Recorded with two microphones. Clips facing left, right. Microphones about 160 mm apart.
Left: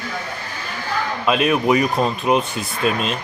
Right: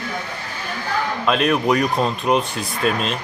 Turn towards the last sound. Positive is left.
turn(degrees=0)  # may be behind; listen again after turning